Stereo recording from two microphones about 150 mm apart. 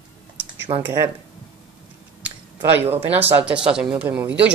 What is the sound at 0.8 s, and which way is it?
Speech, 20° right (ahead or behind).